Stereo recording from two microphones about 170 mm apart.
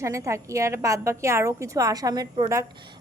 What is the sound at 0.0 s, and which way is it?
A woman's voice, 20° right (ahead or behind).